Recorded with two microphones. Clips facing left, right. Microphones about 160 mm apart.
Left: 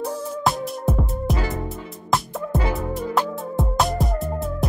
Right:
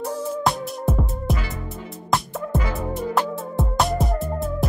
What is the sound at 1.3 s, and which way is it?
Music, 40° left (ahead or behind).